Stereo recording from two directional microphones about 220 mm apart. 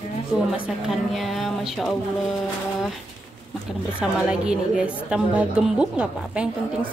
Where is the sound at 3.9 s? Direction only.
5° right (ahead or behind).